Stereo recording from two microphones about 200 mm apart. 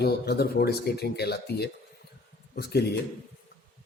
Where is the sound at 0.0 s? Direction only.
55° left (ahead or behind).